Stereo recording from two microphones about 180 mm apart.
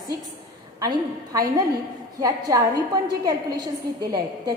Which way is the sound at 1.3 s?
20° right (ahead or behind).